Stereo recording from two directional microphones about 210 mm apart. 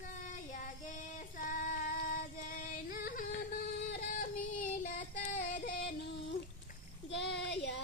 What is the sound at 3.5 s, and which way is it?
Music, 45° left (ahead or behind).